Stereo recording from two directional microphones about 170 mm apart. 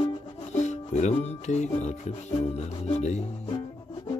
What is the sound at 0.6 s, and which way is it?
Music, 45° left (ahead or behind).